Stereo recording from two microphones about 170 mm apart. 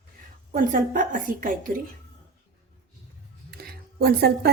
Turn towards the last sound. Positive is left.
turn(degrees=-65)  # may be behind; listen again after turning